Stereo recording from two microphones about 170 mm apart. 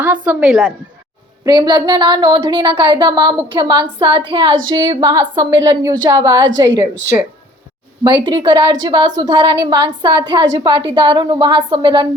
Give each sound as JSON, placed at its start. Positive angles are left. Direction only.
{"t": 0.0, "sound": "a woman's voice", "side_deg": -10}
{"t": 1.5, "sound": "a woman's voice", "side_deg": -25}
{"t": 8.0, "sound": "a woman's voice", "side_deg": -25}